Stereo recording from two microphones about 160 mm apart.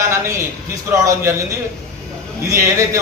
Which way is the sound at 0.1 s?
15° right (ahead or behind).